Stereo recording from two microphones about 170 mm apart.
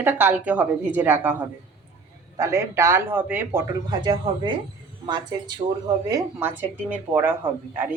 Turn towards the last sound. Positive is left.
turn(degrees=-10)  # may be behind; listen again after turning